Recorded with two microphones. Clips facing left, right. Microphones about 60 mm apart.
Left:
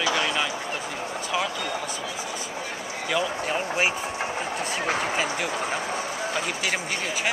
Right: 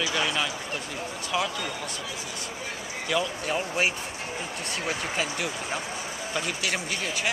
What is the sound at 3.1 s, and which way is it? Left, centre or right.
Speech, centre.